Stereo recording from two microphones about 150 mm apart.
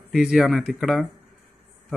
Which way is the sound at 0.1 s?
5° right (ahead or behind).